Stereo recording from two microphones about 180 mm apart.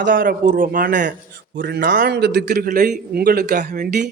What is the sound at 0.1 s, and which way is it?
A man's voice, 50° right (ahead or behind).